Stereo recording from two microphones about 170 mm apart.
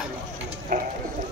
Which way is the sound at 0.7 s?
55° right (ahead or behind).